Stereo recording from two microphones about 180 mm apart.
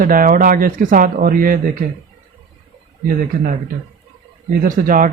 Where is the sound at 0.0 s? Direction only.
50° right (ahead or behind).